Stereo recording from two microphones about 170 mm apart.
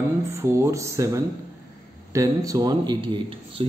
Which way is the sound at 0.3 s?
15° right (ahead or behind).